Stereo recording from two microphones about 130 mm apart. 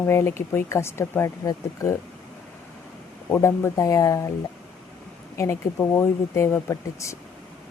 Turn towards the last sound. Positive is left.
turn(degrees=25)  # may be behind; listen again after turning